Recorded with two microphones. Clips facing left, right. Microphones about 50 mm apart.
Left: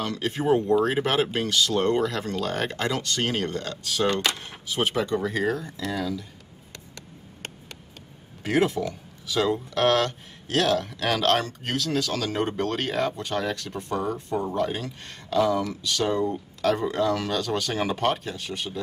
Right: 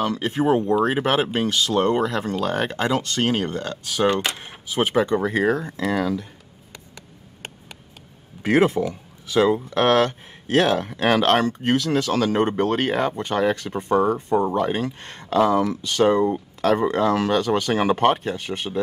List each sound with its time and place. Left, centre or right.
0.0 s speech: right
8.4 s speech: right